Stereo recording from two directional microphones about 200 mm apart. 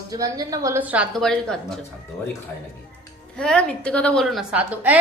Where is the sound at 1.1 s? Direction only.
Centre (ahead or behind).